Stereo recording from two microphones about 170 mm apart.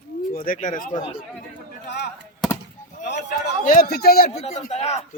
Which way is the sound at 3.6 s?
55° left (ahead or behind).